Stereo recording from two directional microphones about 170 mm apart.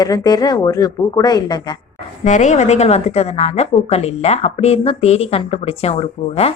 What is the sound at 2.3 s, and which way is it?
A woman's voice, 45° left (ahead or behind).